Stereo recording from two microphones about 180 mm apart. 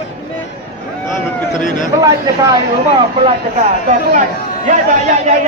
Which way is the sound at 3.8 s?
45° right (ahead or behind).